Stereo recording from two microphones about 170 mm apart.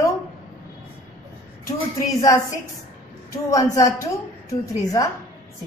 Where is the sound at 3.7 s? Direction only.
20° left (ahead or behind).